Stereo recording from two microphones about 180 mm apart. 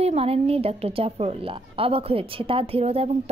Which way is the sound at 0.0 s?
35° right (ahead or behind).